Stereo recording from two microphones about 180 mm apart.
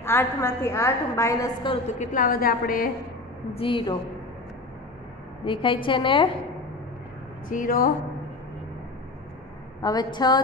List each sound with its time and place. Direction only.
0.0 s a woman's voice: 15° left (ahead or behind)
2.0 s a woman's voice: 50° left (ahead or behind)
3.5 s a woman's voice: 30° left (ahead or behind)
5.4 s a woman's voice: 30° left (ahead or behind)
7.4 s a woman's voice: 50° left (ahead or behind)
9.8 s a woman's voice: 20° left (ahead or behind)